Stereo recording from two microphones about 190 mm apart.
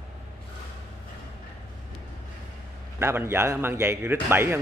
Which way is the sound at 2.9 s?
15° right (ahead or behind).